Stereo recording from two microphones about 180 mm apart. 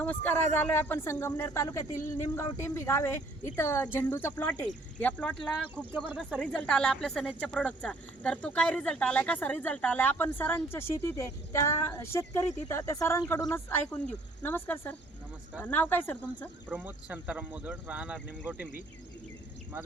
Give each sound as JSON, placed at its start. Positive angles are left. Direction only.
{"t": 0.0, "sound": "speech", "side_deg": 10}
{"t": 1.9, "sound": "speech", "side_deg": 45}
{"t": 2.3, "sound": "speech", "side_deg": 15}
{"t": 5.7, "sound": "speech", "side_deg": -10}
{"t": 6.1, "sound": "speech", "side_deg": 5}
{"t": 16.6, "sound": "speech", "side_deg": -10}